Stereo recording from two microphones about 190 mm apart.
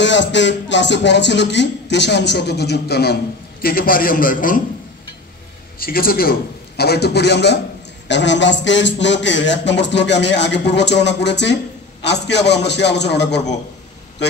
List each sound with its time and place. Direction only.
0.0 s a man's voice: 70° left (ahead or behind); by 4.6 s 45° left (ahead or behind)
5.8 s a man's voice: 50° left (ahead or behind)